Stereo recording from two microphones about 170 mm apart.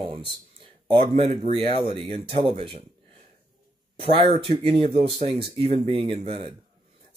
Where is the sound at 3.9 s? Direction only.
35° right (ahead or behind).